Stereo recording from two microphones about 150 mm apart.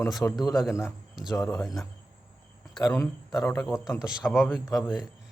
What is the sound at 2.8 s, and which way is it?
Speech, 20° left (ahead or behind).